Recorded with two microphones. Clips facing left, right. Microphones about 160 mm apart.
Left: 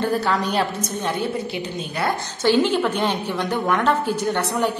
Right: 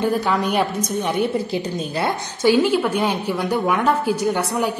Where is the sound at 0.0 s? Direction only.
10° right (ahead or behind).